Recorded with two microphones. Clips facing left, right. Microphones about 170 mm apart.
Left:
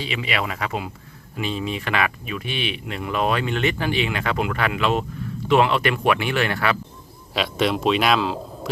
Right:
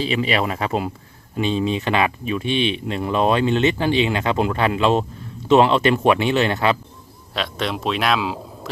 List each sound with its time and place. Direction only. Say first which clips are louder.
0.0 s speech: right 6 dB; 30° right (ahead or behind)
7.3 s speech: left 3 dB; 5° left (ahead or behind)